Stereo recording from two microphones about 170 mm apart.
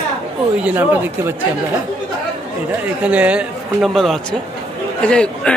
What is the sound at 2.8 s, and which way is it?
Speech, 10° right (ahead or behind).